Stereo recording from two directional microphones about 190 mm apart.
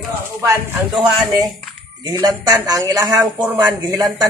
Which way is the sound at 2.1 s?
20° right (ahead or behind).